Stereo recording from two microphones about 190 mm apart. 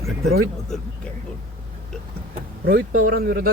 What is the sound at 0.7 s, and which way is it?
Speech, centre (ahead or behind).